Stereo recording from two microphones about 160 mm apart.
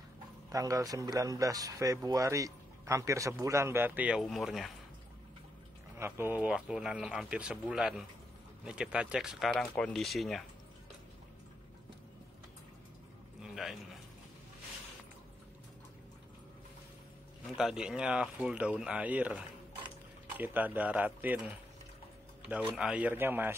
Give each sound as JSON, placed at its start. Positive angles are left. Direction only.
{"t": 0.5, "sound": "speech", "side_deg": -20}
{"t": 5.9, "sound": "speech", "side_deg": -15}
{"t": 13.4, "sound": "a sound", "side_deg": 0}
{"t": 17.6, "sound": "speech", "side_deg": -5}